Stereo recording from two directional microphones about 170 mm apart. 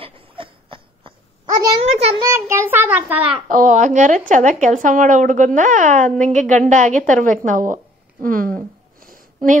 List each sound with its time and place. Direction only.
0.0 s a sound: 30° right (ahead or behind)
2.2 s child singing: 15° right (ahead or behind)
3.4 s speech: 50° right (ahead or behind)